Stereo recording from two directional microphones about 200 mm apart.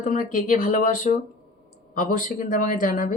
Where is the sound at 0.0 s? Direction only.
40° left (ahead or behind).